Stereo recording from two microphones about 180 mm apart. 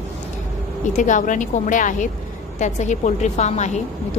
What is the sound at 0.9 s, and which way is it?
A woman's voice, 45° left (ahead or behind).